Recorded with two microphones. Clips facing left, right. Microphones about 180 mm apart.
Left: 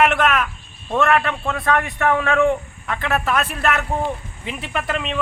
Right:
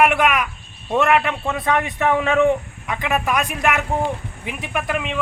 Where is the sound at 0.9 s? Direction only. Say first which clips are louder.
Right 1 dB; 15° right (ahead or behind).